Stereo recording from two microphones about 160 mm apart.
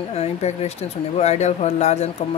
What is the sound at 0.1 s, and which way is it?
Speech, 40° left (ahead or behind).